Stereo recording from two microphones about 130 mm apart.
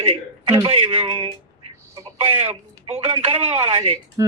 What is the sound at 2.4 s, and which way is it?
Speech, 55° right (ahead or behind).